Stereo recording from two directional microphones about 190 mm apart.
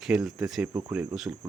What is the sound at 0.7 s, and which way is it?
Speech, 20° right (ahead or behind).